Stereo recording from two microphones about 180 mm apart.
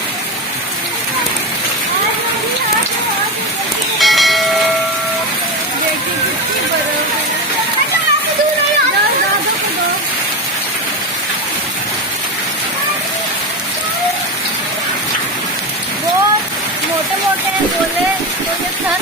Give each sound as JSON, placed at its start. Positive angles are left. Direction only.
{"t": 4.0, "sound": "train", "side_deg": 0}